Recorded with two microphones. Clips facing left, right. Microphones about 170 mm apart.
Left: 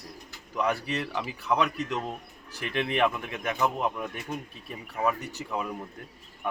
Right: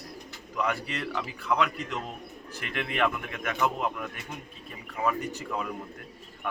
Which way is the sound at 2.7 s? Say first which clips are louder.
Left 3 dB; 25° left (ahead or behind).